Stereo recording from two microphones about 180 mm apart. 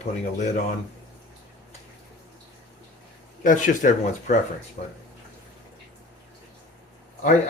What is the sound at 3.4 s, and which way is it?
Speech, 45° left (ahead or behind).